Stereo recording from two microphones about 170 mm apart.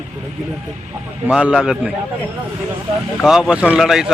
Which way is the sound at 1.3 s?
5° right (ahead or behind).